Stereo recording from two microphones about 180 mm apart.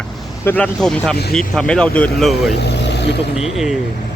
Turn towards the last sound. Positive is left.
turn(degrees=0)  # may be behind; listen again after turning